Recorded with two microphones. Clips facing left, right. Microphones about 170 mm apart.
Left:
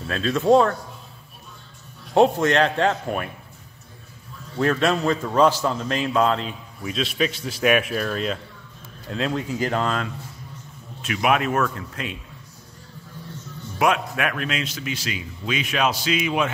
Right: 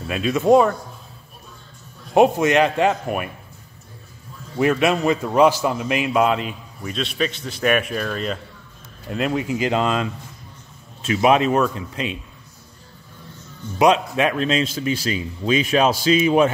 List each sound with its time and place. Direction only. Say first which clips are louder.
0.0 s a man's voice: right 2 dB; 10° right (ahead or behind)
2.1 s a man's voice: right 2 dB; 10° right (ahead or behind)
4.6 s a man's voice: right 3 dB; 10° right (ahead or behind)
6.8 s a man's voice: even; 5° left (ahead or behind)
9.6 s a man's voice: right 3 dB; 15° right (ahead or behind)
13.7 s speech: right 5 dB; 20° right (ahead or behind)